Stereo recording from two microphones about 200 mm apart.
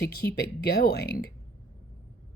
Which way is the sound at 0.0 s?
55° left (ahead or behind).